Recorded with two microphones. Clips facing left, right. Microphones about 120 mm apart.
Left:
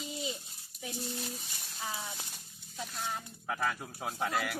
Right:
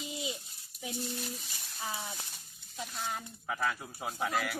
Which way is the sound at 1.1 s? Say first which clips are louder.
Even; 25° left (ahead or behind).